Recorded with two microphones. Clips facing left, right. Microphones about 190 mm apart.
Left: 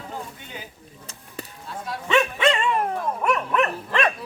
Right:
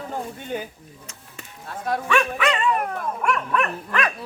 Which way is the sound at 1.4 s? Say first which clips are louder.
Left 8 dB; 35° left (ahead or behind).